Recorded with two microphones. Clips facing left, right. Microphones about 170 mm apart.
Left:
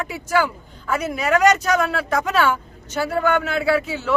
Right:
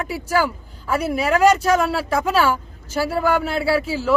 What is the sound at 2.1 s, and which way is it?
Speech, 5° right (ahead or behind).